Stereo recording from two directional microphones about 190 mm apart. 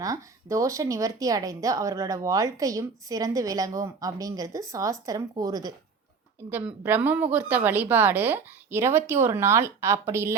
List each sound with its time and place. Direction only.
0.0 s speech: 15° right (ahead or behind)